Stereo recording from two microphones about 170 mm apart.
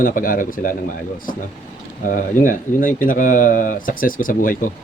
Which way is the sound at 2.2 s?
50° left (ahead or behind).